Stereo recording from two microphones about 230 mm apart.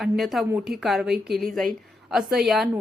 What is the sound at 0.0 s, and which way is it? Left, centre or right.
A woman's voice, centre.